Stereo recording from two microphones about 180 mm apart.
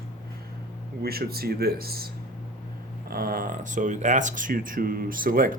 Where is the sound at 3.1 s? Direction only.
55° right (ahead or behind).